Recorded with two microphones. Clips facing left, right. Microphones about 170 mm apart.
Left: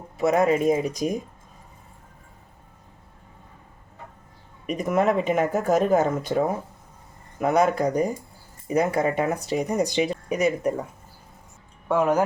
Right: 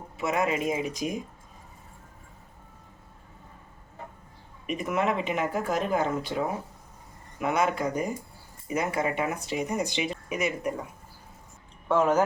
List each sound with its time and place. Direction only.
0.2 s speech: 40° left (ahead or behind)
4.6 s speech: 40° left (ahead or behind)
11.9 s speech: 10° left (ahead or behind)